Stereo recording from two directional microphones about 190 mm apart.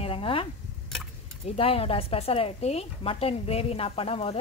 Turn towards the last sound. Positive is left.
turn(degrees=30)  # may be behind; listen again after turning